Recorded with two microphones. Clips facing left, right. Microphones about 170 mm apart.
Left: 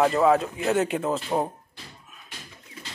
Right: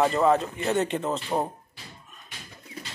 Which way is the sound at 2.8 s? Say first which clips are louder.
Right 3 dB; 40° right (ahead or behind).